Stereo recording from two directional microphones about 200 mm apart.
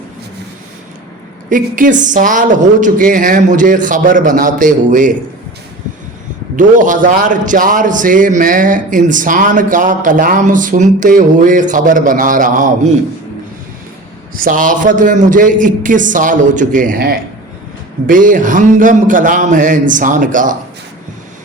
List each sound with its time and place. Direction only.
1.5 s a man's voice: 40° right (ahead or behind)
6.6 s a man's voice: 40° right (ahead or behind)
14.3 s a man's voice: 45° right (ahead or behind)